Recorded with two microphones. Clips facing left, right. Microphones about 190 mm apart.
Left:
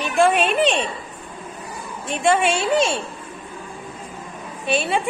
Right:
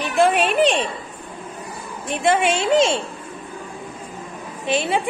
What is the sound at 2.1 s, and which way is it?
Speech, 20° right (ahead or behind).